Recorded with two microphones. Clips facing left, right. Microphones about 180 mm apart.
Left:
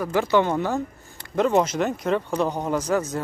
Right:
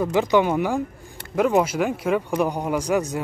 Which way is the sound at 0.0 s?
15° right (ahead or behind).